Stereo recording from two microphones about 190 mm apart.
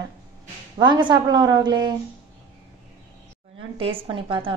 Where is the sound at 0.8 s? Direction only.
25° right (ahead or behind).